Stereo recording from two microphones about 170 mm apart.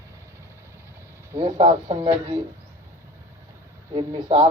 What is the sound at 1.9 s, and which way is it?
Speech, 40° right (ahead or behind).